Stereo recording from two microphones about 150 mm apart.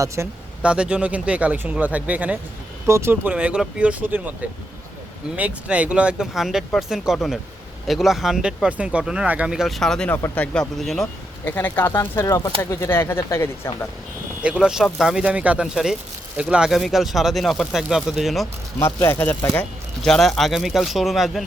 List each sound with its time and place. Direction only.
0.2 s speech: 15° right (ahead or behind)
5.4 s speech: 10° right (ahead or behind)
11.4 s speech: 15° left (ahead or behind)
14.4 s speech: 5° right (ahead or behind)
18.8 s speech: 15° left (ahead or behind)
19.5 s speech: 5° left (ahead or behind)